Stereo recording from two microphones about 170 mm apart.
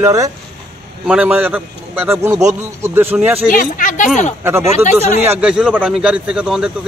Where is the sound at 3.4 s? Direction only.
55° left (ahead or behind).